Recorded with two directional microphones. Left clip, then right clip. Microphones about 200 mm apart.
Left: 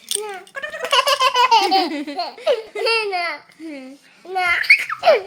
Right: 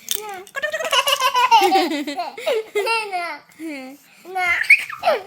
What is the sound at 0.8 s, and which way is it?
Baby laughter, 5° left (ahead or behind).